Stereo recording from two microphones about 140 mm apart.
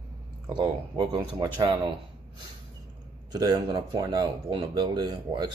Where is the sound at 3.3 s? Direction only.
30° right (ahead or behind).